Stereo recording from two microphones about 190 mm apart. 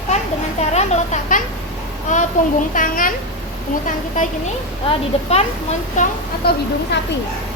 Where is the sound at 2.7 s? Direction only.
45° left (ahead or behind).